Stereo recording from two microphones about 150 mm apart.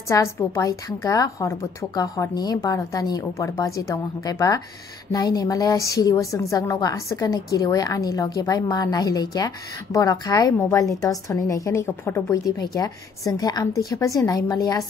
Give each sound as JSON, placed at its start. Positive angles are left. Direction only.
{"t": 0.1, "sound": "a woman's voice", "side_deg": 20}